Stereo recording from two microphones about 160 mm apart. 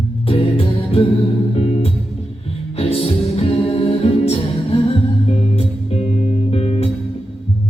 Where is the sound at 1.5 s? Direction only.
35° left (ahead or behind).